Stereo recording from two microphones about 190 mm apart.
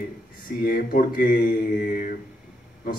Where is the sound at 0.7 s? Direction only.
50° left (ahead or behind).